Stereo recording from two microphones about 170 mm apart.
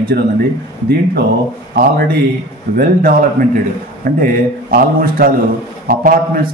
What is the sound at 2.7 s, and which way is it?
A man's voice, 60° right (ahead or behind).